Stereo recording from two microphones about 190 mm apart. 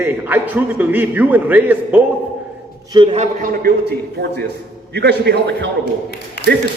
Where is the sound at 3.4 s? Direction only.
50° right (ahead or behind).